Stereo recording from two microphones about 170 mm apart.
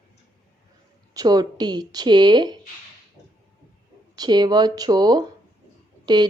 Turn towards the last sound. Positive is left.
turn(degrees=-25)  # may be behind; listen again after turning